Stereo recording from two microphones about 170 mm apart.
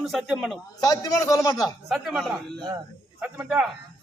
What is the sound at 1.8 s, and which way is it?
A man's voice, centre (ahead or behind).